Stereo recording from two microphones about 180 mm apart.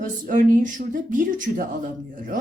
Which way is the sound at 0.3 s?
45° right (ahead or behind).